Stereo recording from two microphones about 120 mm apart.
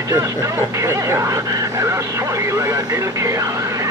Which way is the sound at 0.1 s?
25° right (ahead or behind).